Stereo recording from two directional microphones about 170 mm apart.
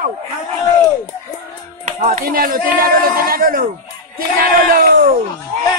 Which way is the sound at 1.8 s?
50° right (ahead or behind).